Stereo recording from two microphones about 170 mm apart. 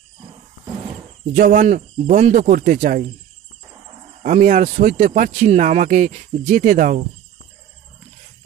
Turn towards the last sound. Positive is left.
turn(degrees=-50)  # may be behind; listen again after turning